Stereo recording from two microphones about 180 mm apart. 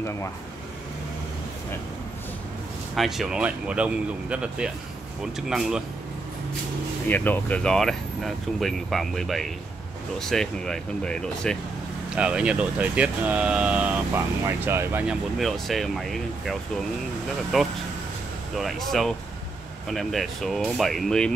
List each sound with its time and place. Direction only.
3.0 s speech: centre (ahead or behind)
7.1 s speech: 10° left (ahead or behind)
12.2 s speech: 5° right (ahead or behind)